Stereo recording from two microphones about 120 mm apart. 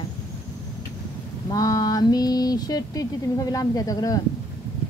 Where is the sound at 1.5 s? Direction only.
30° left (ahead or behind).